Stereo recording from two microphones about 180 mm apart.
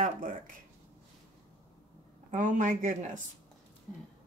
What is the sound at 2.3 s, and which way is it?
Speech, 45° right (ahead or behind).